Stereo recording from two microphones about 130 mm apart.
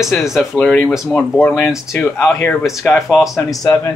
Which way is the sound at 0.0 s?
5° right (ahead or behind).